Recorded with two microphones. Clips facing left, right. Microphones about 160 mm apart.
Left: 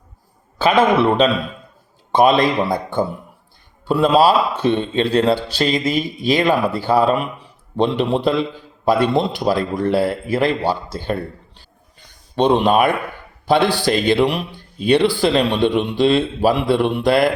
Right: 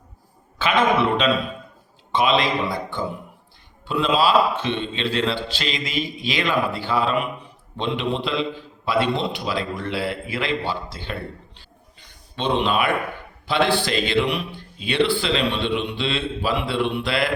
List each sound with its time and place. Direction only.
0.6 s speech: 35° left (ahead or behind)
2.1 s a man's voice: 45° left (ahead or behind)
11.9 s a sound: 45° left (ahead or behind)
13.5 s a man's voice: 40° left (ahead or behind)